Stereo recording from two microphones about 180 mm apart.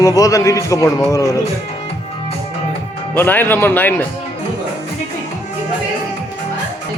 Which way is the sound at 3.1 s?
10° left (ahead or behind).